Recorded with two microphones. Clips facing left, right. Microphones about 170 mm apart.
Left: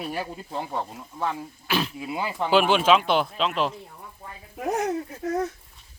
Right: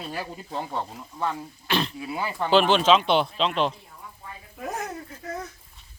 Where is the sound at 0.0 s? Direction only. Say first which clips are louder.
Left 3 dB; 20° left (ahead or behind).